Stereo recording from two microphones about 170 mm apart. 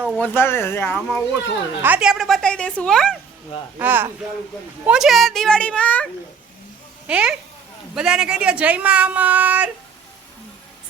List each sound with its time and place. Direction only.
0.2 s speech: 15° left (ahead or behind)
1.8 s speech: 5° right (ahead or behind)
3.8 s speech: 10° right (ahead or behind); by 6.1 s 5° left (ahead or behind)
7.1 s speech: 5° right (ahead or behind)